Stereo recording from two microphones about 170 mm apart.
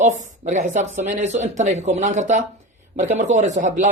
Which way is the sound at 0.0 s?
45° right (ahead or behind).